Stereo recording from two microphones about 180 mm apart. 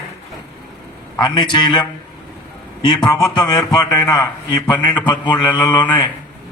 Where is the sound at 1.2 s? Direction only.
25° left (ahead or behind).